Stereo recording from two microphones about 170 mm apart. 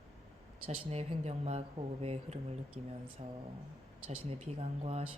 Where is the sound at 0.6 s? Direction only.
40° right (ahead or behind).